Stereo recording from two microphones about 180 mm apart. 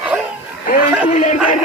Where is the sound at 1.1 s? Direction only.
45° left (ahead or behind).